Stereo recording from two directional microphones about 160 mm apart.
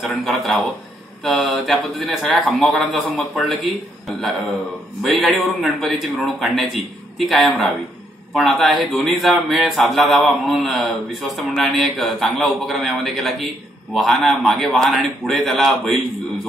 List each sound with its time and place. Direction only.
0.0 s a man's voice: centre (ahead or behind)